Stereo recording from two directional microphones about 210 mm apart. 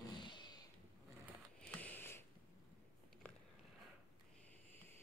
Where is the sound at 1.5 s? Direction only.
10° left (ahead or behind).